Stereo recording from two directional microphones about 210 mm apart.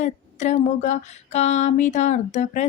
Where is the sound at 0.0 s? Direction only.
35° left (ahead or behind).